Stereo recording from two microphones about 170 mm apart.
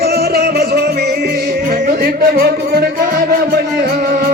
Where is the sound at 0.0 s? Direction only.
65° right (ahead or behind).